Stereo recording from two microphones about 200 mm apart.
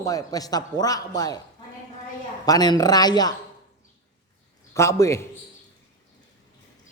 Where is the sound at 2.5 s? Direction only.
20° left (ahead or behind).